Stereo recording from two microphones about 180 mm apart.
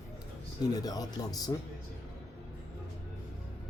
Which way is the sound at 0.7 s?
20° left (ahead or behind).